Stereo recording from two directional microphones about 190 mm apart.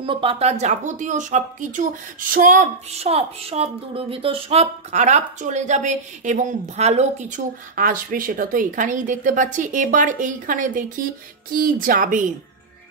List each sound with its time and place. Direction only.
0.0 s speech: 25° right (ahead or behind); by 12.3 s 45° right (ahead or behind)